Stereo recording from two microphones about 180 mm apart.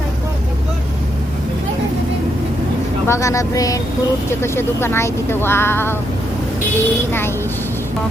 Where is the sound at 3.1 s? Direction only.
15° left (ahead or behind).